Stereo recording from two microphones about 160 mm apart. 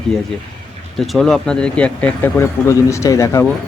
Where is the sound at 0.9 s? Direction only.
Centre (ahead or behind).